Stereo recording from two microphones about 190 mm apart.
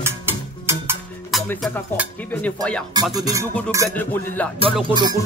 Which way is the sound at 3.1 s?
20° right (ahead or behind).